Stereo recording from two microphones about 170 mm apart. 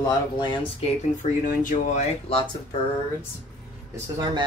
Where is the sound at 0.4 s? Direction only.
25° left (ahead or behind).